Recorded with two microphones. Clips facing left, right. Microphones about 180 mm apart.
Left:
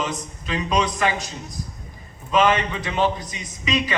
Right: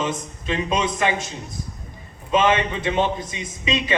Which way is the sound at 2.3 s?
25° right (ahead or behind).